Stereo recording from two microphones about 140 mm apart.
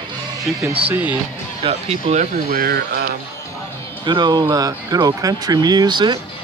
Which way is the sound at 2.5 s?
90° right.